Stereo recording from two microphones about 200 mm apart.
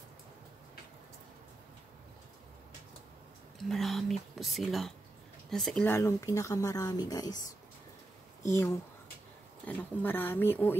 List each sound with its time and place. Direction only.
3.6 s speech: centre (ahead or behind); by 7.3 s 20° left (ahead or behind)
9.7 s speech: 10° left (ahead or behind)